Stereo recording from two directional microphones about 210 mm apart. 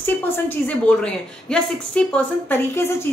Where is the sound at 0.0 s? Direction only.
10° left (ahead or behind).